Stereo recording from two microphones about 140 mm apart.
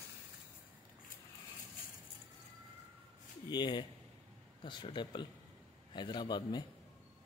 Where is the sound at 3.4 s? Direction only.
30° left (ahead or behind).